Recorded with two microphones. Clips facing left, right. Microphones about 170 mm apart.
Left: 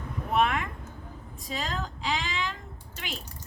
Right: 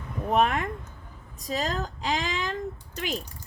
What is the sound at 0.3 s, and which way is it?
Speech, 40° right (ahead or behind).